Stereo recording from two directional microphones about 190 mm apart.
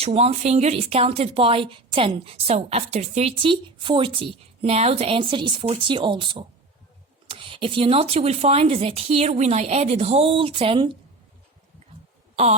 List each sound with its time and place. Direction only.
0.0 s speech: 35° right (ahead or behind)